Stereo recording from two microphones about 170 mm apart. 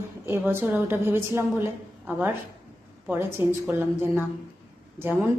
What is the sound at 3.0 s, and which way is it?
A woman's voice, 10° right (ahead or behind).